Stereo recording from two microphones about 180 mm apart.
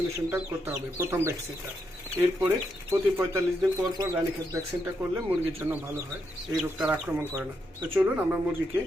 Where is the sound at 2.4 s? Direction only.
20° right (ahead or behind).